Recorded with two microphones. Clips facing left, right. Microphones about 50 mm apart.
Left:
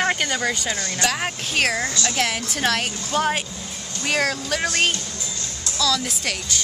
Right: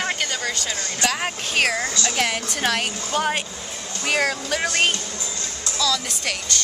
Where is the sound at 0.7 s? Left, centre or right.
Left.